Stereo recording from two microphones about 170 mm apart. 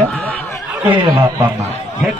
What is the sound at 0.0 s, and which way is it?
Snicker, 10° left (ahead or behind).